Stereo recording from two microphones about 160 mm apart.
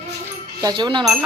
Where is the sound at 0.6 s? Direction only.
30° right (ahead or behind).